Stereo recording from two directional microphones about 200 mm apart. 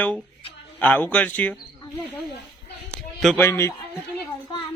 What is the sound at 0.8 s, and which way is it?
Speech, 10° left (ahead or behind).